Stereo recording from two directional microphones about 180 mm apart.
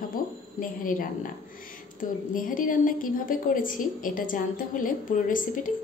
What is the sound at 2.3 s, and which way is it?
A woman's voice, 50° left (ahead or behind).